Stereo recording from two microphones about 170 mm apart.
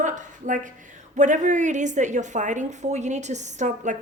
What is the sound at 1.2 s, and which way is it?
A woman's voice, 45° right (ahead or behind).